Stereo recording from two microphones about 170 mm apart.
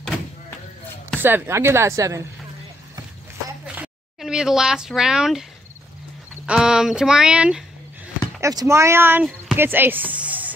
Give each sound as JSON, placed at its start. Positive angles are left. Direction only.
{"t": 1.2, "sound": "speech", "side_deg": -15}
{"t": 3.6, "sound": "speech", "side_deg": -5}
{"t": 6.4, "sound": "speech", "side_deg": -5}
{"t": 8.4, "sound": "speech", "side_deg": -15}
{"t": 9.6, "sound": "music", "side_deg": -10}